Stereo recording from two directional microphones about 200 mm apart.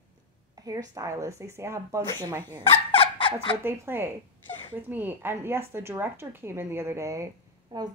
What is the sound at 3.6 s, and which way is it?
A woman's voice, 10° right (ahead or behind).